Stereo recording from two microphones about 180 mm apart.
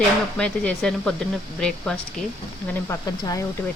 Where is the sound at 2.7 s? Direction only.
20° left (ahead or behind).